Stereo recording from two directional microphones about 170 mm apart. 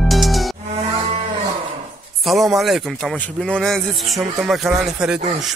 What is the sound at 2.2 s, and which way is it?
Speech, centre (ahead or behind).